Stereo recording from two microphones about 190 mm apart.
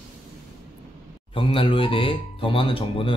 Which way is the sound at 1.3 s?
30° left (ahead or behind).